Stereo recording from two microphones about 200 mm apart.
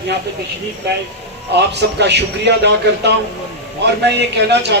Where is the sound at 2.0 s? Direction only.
55° right (ahead or behind).